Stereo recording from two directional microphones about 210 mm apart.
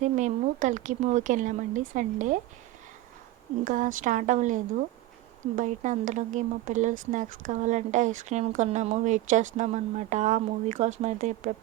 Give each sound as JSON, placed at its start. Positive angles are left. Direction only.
{"t": 0.0, "sound": "speech", "side_deg": -35}
{"t": 3.6, "sound": "speech", "side_deg": -40}